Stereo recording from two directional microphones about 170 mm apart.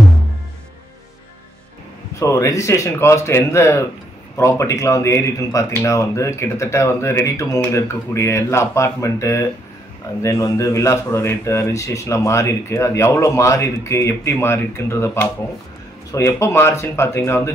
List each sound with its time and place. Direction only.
2.1 s speech: 20° left (ahead or behind)